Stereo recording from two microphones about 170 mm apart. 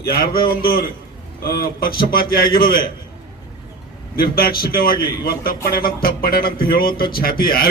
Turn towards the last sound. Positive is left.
turn(degrees=60)  # may be behind; listen again after turning